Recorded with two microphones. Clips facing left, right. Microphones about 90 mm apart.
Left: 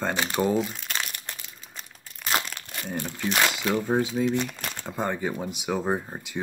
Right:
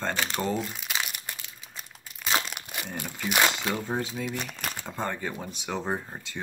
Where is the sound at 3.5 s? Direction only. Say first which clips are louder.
Left 4 dB; 5° left (ahead or behind).